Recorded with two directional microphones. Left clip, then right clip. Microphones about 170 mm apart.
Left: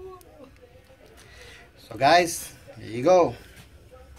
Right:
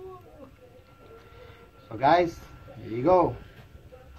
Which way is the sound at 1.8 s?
20° left (ahead or behind).